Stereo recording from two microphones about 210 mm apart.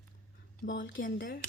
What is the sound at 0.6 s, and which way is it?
Speech, 60° left (ahead or behind).